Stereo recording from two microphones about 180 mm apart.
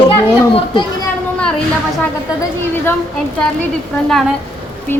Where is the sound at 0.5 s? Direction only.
25° left (ahead or behind).